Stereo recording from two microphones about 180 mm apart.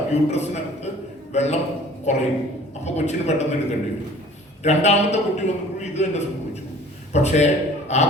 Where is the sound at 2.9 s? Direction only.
40° left (ahead or behind).